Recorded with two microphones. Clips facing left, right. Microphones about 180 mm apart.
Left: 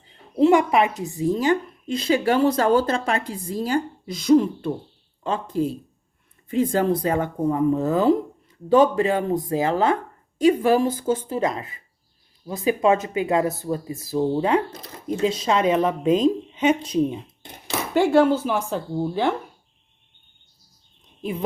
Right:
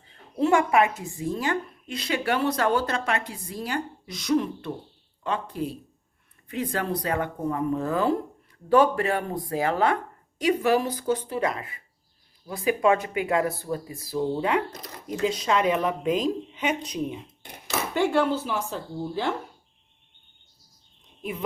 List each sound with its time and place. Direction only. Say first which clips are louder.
0.3 s speech: left 4 dB; 20° left (ahead or behind)
1.4 s a woman's voice: left 7 dB; 30° left (ahead or behind)
6.5 s speech: left 8 dB; 30° left (ahead or behind)
18.4 s speech: left 6 dB; 55° left (ahead or behind)